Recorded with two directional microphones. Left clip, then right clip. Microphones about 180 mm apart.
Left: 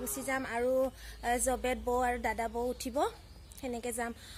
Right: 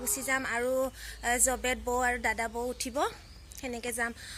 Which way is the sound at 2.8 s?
10° left (ahead or behind).